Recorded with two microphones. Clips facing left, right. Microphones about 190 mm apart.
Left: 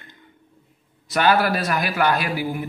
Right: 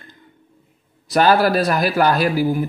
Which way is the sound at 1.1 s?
35° right (ahead or behind).